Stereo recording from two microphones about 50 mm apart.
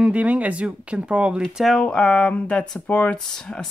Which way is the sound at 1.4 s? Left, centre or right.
Centre.